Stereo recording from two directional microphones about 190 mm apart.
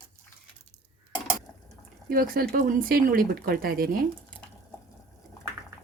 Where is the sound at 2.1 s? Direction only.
50° right (ahead or behind).